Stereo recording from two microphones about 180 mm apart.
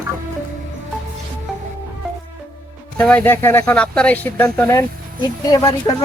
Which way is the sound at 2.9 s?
5° left (ahead or behind).